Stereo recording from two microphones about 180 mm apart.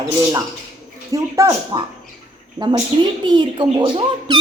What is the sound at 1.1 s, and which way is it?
Speech, 15° right (ahead or behind).